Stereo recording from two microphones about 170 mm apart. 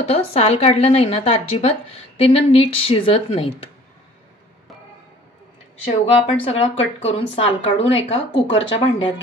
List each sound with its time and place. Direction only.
0.0 s a woman's voice: 40° left (ahead or behind)
6.4 s a woman's voice: 35° left (ahead or behind)